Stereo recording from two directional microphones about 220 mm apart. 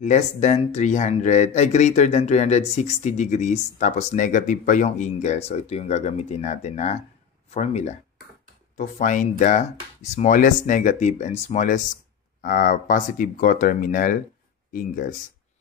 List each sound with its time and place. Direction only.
0.0 s speech: 35° left (ahead or behind)